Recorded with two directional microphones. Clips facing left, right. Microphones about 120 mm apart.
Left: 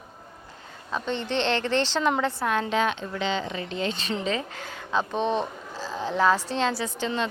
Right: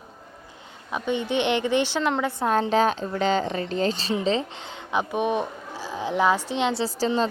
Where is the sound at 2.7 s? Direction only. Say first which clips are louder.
Right 4 dB; 35° right (ahead or behind).